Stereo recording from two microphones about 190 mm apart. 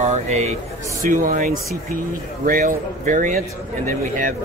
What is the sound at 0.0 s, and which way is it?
A man's voice, 35° right (ahead or behind).